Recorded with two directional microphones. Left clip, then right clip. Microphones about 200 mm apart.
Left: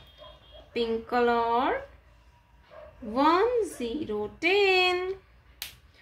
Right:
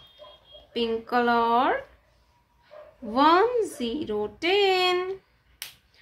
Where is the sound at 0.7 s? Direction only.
10° right (ahead or behind).